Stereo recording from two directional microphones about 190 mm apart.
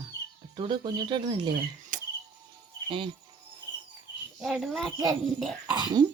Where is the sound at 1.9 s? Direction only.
45° right (ahead or behind).